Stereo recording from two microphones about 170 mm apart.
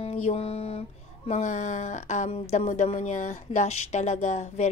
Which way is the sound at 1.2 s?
45° left (ahead or behind).